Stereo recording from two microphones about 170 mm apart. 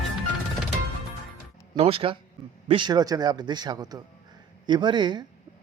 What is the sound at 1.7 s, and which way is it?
Speech, 35° right (ahead or behind).